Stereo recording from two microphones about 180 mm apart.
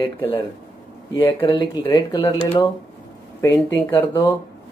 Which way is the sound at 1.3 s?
25° left (ahead or behind).